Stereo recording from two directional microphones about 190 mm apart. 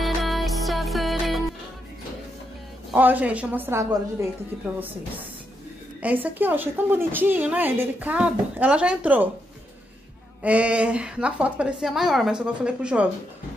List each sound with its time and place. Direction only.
0.0 s music: centre (ahead or behind)
2.9 s a woman's voice: 10° right (ahead or behind)
6.0 s a woman's voice: 10° right (ahead or behind)
10.4 s a woman's voice: 5° right (ahead or behind)